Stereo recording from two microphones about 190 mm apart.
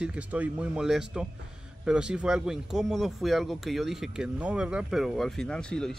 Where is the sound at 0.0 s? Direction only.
5° right (ahead or behind).